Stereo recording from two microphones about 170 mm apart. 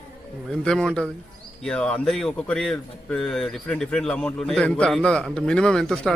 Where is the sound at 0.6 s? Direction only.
5° left (ahead or behind).